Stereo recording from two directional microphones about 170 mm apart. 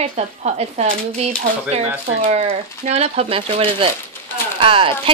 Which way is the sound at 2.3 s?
40° right (ahead or behind).